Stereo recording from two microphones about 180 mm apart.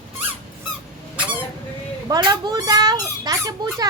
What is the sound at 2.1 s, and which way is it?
A child's voice, 20° right (ahead or behind).